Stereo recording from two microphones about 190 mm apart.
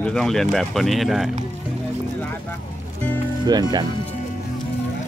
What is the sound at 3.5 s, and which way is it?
Speech, 20° right (ahead or behind).